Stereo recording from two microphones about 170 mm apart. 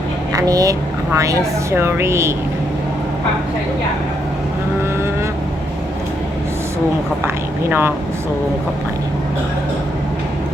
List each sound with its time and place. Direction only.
0.3 s a woman's voice: 20° right (ahead or behind)
7.7 s a woman's voice: 10° right (ahead or behind)